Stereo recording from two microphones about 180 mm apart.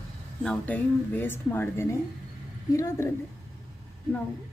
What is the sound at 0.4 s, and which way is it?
Speech, 5° left (ahead or behind).